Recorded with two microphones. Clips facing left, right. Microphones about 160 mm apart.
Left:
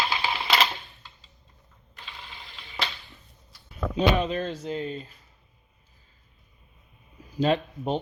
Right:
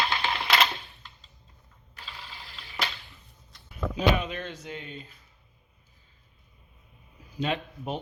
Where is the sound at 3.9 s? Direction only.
35° left (ahead or behind).